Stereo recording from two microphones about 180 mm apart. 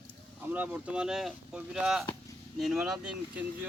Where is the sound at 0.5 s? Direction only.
5° right (ahead or behind).